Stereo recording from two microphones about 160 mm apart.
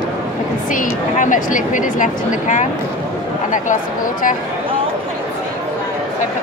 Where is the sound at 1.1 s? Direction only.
55° left (ahead or behind).